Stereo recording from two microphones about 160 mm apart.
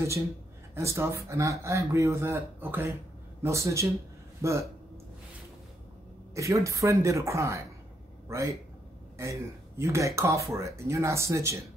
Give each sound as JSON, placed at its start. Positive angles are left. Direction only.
{"t": 0.7, "sound": "speech", "side_deg": -15}
{"t": 6.3, "sound": "speech", "side_deg": -20}